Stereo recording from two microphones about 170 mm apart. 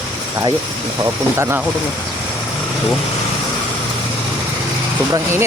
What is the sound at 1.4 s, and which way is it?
Speech, 15° right (ahead or behind).